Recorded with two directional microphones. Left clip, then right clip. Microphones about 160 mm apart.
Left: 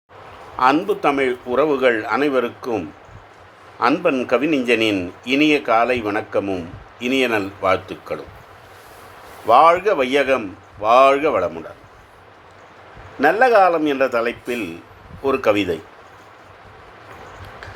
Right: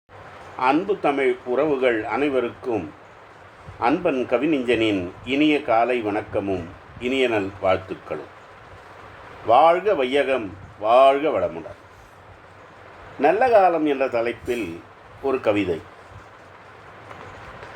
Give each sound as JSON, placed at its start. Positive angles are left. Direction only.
{"t": 0.6, "sound": "a man's voice", "side_deg": 40}
{"t": 9.5, "sound": "a man's voice", "side_deg": 45}
{"t": 13.1, "sound": "a man's voice", "side_deg": 40}